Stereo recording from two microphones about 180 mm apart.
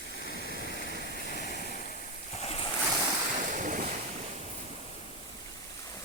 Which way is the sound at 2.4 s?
30° left (ahead or behind).